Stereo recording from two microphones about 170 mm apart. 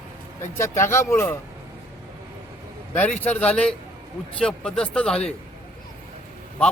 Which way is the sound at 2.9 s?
10° left (ahead or behind).